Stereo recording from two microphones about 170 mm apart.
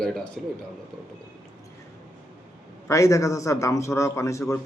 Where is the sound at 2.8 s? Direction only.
20° left (ahead or behind).